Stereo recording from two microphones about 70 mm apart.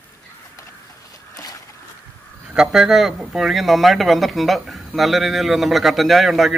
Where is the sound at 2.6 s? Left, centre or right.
Centre.